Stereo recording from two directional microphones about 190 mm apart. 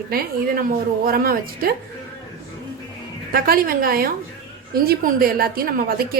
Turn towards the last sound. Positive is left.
turn(degrees=-50)  # may be behind; listen again after turning